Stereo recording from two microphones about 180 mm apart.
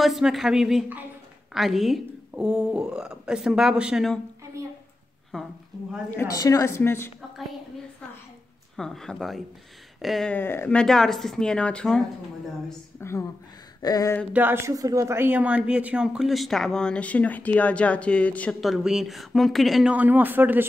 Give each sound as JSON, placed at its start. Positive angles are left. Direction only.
{"t": 0.0, "sound": "speech", "side_deg": 0}
{"t": 6.0, "sound": "a woman's voice", "side_deg": 15}
{"t": 8.7, "sound": "speech", "side_deg": 5}
{"t": 13.0, "sound": "a woman's voice", "side_deg": 15}
{"t": 13.8, "sound": "a sound", "side_deg": 20}
{"t": 14.3, "sound": "speech", "side_deg": -10}